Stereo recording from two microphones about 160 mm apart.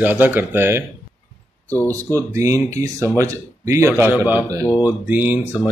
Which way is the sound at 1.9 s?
20° right (ahead or behind).